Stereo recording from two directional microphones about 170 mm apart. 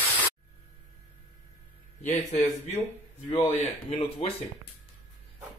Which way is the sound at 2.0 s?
45° left (ahead or behind).